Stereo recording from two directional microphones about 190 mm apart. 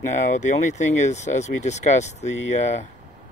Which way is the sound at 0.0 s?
40° left (ahead or behind).